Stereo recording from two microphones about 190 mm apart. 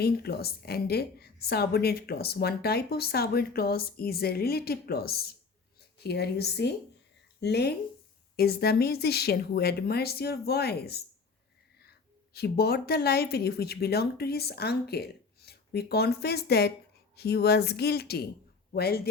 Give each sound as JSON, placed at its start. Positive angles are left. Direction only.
{"t": 0.0, "sound": "a woman's voice", "side_deg": 55}